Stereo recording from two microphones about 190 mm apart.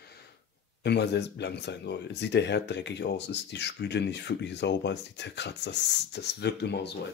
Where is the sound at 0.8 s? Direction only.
60° left (ahead or behind).